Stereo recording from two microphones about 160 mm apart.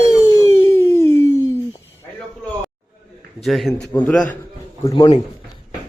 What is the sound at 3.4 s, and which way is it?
Speech, centre (ahead or behind).